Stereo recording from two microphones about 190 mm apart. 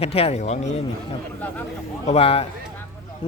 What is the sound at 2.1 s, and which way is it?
Speech, 30° left (ahead or behind).